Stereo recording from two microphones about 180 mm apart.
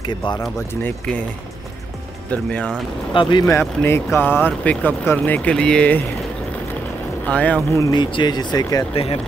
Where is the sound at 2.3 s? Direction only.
5° left (ahead or behind).